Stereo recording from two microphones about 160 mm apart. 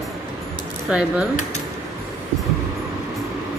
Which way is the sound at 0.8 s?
5° right (ahead or behind).